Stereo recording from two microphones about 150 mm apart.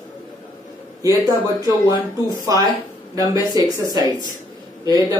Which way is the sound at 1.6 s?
30° left (ahead or behind).